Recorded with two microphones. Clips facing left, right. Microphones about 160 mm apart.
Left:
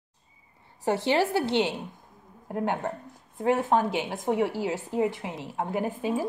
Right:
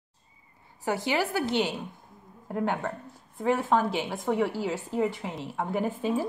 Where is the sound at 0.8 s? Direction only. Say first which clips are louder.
Left 3 dB; 30° left (ahead or behind).